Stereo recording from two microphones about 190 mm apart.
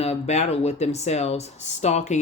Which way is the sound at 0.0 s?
35° left (ahead or behind).